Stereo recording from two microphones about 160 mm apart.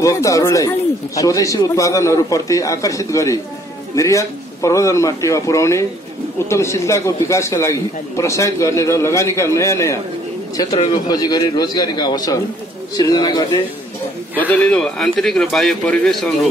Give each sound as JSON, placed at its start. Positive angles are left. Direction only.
{"t": 0.0, "sound": "a man's voice", "side_deg": 20}
{"t": 14.3, "sound": "a man's voice", "side_deg": 10}